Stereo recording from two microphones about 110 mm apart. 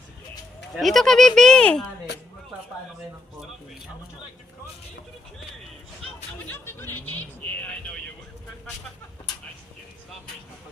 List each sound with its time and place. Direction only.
0.8 s speech: centre (ahead or behind)
6.5 s speech: 20° left (ahead or behind)